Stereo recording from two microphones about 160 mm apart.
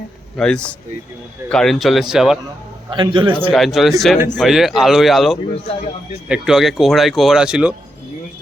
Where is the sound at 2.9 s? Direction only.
30° right (ahead or behind).